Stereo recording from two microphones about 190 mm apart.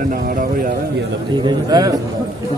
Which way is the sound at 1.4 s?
20° right (ahead or behind).